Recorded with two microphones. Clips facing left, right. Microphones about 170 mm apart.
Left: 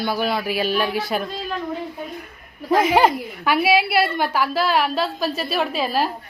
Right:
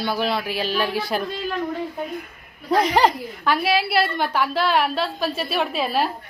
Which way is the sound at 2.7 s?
5° left (ahead or behind).